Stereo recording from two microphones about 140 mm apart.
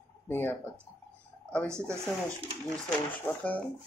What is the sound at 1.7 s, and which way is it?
Speech, 20° right (ahead or behind).